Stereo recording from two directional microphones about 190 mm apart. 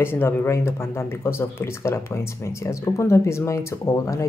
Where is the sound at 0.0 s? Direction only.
10° left (ahead or behind).